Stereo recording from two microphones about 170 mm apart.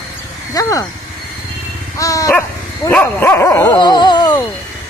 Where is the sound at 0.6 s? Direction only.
20° left (ahead or behind).